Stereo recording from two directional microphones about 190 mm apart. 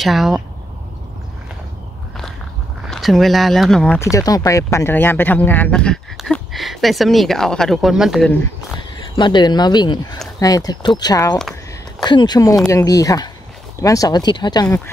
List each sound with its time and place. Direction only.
0.0 s speech: centre (ahead or behind)
2.9 s speech: centre (ahead or behind)
8.7 s speech: 25° left (ahead or behind)